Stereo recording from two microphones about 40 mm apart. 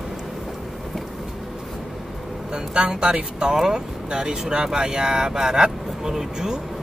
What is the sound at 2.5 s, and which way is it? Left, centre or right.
Speech, centre.